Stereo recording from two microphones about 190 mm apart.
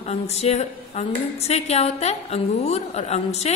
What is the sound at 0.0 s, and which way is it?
A woman's voice, 35° left (ahead or behind).